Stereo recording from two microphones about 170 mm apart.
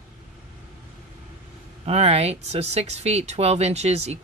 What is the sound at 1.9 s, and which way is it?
Speech, 35° right (ahead or behind).